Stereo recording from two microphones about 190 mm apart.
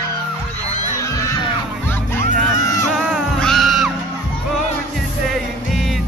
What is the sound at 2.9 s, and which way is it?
Music, centre (ahead or behind).